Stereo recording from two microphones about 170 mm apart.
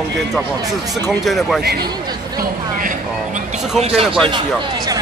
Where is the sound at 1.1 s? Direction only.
Centre (ahead or behind).